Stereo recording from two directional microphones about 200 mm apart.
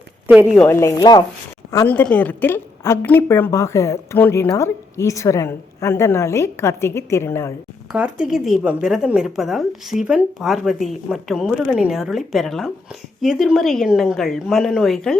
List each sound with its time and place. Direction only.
0.3 s speech: centre (ahead or behind)
0.7 s a woman's voice: 15° left (ahead or behind)
7.9 s speech: 5° right (ahead or behind)